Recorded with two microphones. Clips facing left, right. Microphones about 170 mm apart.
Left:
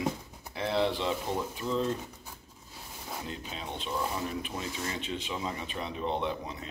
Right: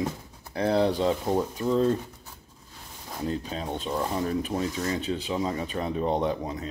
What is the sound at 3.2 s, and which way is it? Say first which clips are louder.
Speech: right 13 dB; 40° right (ahead or behind).